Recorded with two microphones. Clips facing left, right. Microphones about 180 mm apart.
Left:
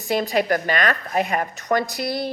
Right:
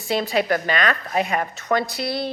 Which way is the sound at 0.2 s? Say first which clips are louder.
Even; 45° left (ahead or behind).